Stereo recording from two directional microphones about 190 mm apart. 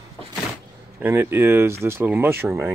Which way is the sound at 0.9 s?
10° right (ahead or behind).